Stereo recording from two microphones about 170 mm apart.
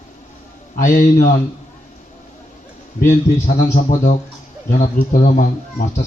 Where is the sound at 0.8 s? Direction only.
50° left (ahead or behind).